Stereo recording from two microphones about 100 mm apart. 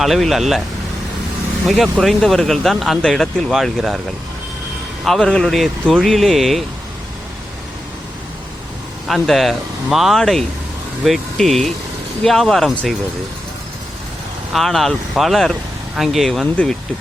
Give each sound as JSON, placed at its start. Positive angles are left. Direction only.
{"t": 0.0, "sound": "speech", "side_deg": 0}
{"t": 1.6, "sound": "speech", "side_deg": 0}
{"t": 5.0, "sound": "speech", "side_deg": 5}
{"t": 9.0, "sound": "speech", "side_deg": 0}
{"t": 14.5, "sound": "speech", "side_deg": 0}